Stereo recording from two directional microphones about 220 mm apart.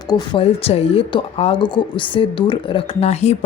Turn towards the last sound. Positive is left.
turn(degrees=30)  # may be behind; listen again after turning